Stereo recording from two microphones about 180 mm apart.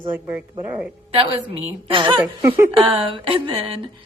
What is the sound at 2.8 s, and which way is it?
Speech, 30° right (ahead or behind).